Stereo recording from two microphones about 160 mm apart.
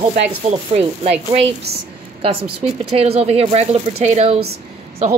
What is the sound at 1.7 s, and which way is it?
Speech, 85° right.